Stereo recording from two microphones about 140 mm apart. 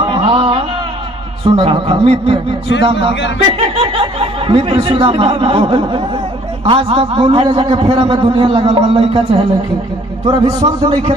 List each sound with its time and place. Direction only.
0.0 s a sound: 40° right (ahead or behind)
1.5 s a man's voice: 40° right (ahead or behind)
10.2 s a man's voice: 30° right (ahead or behind)